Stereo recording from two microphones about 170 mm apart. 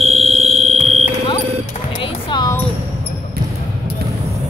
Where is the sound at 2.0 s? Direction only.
25° left (ahead or behind).